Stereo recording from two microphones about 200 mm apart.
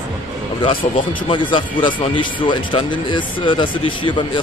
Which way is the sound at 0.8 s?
35° left (ahead or behind).